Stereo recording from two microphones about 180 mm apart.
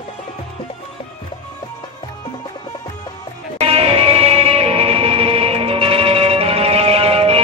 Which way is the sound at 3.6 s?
35° right (ahead or behind).